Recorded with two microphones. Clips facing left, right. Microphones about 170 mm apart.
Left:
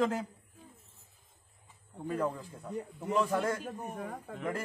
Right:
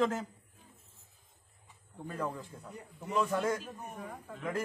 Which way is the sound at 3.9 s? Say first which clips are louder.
Left 4 dB; 60° left (ahead or behind).